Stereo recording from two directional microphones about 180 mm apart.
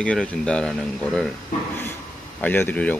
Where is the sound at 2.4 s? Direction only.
10° left (ahead or behind).